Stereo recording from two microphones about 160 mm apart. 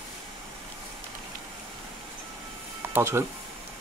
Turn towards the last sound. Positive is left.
turn(degrees=-15)  # may be behind; listen again after turning